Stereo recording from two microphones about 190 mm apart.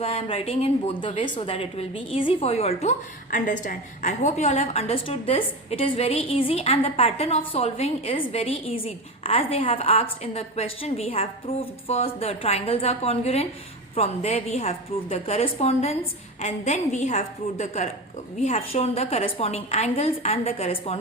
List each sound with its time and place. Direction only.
0.0 s a woman's voice: 30° left (ahead or behind)